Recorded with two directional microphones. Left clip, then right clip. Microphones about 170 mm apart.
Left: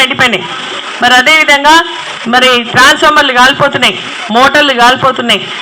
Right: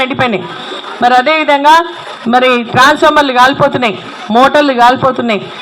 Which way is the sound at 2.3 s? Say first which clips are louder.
Left 2 dB; 40° right (ahead or behind).